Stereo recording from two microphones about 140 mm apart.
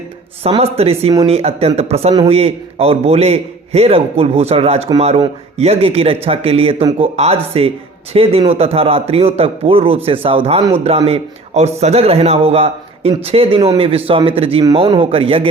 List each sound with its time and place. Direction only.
0.6 s speech: 45° right (ahead or behind)